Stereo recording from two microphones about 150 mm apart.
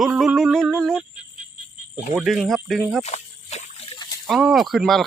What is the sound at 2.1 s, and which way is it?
Speech, centre (ahead or behind).